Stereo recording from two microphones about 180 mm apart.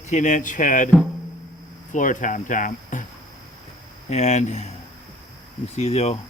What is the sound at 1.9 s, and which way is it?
Speech, 45° left (ahead or behind).